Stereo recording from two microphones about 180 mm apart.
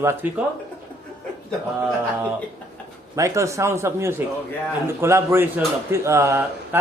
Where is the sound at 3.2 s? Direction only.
15° right (ahead or behind).